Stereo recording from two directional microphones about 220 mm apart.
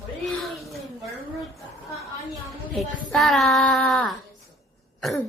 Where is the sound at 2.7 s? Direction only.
Centre (ahead or behind).